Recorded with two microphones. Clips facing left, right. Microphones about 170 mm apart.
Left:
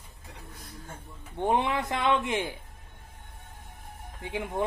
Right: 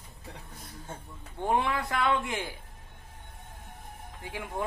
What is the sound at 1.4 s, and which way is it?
A man's voice, 20° left (ahead or behind).